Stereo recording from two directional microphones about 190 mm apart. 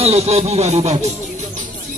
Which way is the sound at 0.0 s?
35° right (ahead or behind).